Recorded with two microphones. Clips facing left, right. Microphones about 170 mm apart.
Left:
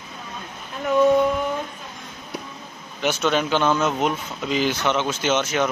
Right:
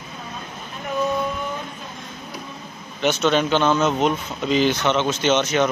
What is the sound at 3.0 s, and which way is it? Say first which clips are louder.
Speech: right 2 dB; 10° left (ahead or behind).